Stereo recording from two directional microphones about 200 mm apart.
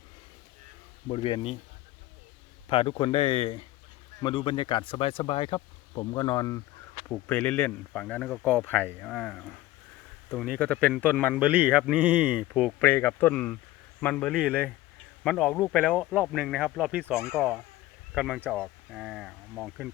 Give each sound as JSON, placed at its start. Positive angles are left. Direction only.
{"t": 1.0, "sound": "speech", "side_deg": 25}
{"t": 2.6, "sound": "speech", "side_deg": 25}
{"t": 11.4, "sound": "speech", "side_deg": -10}